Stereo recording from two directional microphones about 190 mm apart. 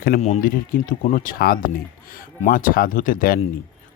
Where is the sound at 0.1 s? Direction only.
50° left (ahead or behind).